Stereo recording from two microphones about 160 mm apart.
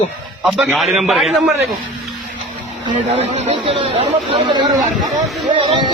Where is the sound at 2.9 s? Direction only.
45° right (ahead or behind).